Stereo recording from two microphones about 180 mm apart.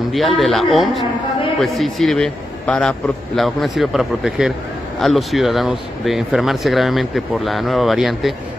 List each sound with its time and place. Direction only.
0.1 s speech: centre (ahead or behind)